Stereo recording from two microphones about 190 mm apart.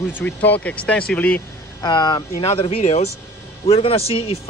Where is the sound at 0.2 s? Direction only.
10° left (ahead or behind).